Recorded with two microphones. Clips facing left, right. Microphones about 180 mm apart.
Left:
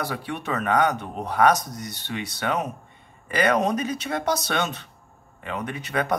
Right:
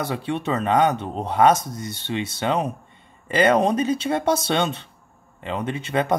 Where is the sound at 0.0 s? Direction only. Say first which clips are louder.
Right 4 dB; 25° right (ahead or behind).